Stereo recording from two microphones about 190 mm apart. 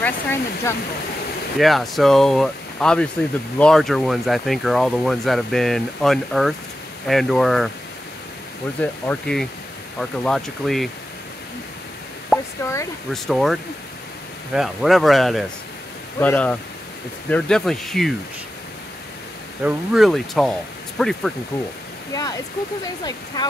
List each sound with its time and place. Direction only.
0.0 s speech: 10° left (ahead or behind)
1.6 s speech: centre (ahead or behind)
8.8 s speech: 5° left (ahead or behind)
12.3 s a sound: centre (ahead or behind)
13.1 s speech: centre (ahead or behind)
19.6 s speech: centre (ahead or behind)
22.1 s speech: 20° left (ahead or behind)